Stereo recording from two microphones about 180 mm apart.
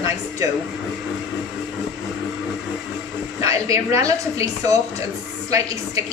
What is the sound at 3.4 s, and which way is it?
Speech, 15° right (ahead or behind).